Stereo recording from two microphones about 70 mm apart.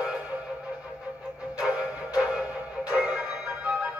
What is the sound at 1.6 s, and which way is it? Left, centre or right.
Music, centre.